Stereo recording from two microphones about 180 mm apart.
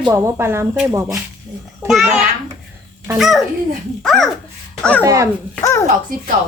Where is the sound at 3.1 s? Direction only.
Centre (ahead or behind).